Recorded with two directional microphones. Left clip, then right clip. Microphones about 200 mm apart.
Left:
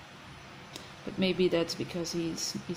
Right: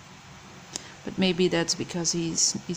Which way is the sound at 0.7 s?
30° right (ahead or behind).